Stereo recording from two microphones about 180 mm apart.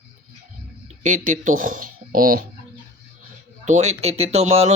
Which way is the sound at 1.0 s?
45° right (ahead or behind).